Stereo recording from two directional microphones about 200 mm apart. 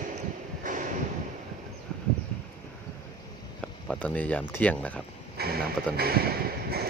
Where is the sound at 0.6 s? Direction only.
40° right (ahead or behind).